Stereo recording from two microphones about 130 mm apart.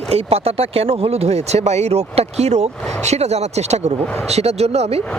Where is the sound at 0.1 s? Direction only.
50° right (ahead or behind).